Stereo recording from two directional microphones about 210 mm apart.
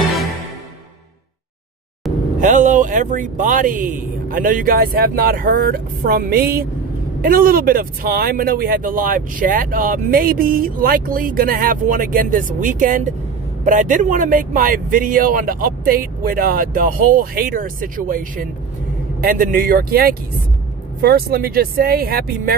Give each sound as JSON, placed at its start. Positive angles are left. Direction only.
{"t": 0.0, "sound": "music", "side_deg": 0}
{"t": 2.4, "sound": "speech", "side_deg": -35}